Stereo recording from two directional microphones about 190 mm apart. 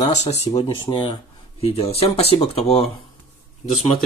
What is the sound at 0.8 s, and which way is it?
Speech, 25° left (ahead or behind).